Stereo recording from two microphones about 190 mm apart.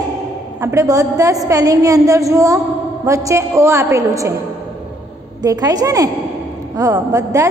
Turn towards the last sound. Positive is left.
turn(degrees=-15)  # may be behind; listen again after turning